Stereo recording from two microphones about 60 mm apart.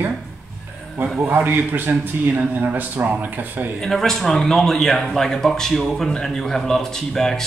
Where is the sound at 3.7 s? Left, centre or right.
Centre.